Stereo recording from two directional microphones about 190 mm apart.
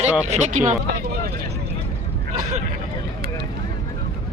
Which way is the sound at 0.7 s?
55° right (ahead or behind).